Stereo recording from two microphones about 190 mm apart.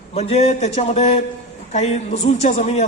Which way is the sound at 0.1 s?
35° left (ahead or behind).